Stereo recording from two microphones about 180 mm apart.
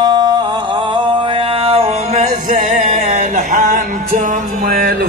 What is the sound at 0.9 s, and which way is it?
Music, 25° right (ahead or behind).